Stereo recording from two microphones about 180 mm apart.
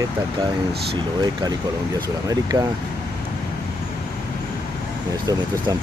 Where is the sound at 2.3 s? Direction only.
20° right (ahead or behind).